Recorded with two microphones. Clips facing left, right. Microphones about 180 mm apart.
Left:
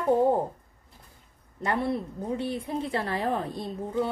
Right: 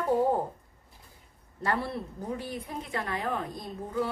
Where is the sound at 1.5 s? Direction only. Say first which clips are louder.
Left 3 dB; 20° left (ahead or behind).